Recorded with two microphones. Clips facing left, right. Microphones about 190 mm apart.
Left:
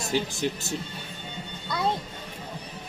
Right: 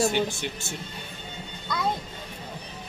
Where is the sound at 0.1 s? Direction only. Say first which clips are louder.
Even; 35° left (ahead or behind).